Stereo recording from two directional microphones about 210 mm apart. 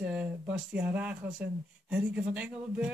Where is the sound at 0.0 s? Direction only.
5° right (ahead or behind).